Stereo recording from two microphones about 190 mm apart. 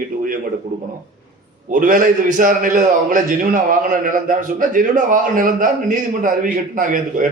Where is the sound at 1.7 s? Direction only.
45° right (ahead or behind).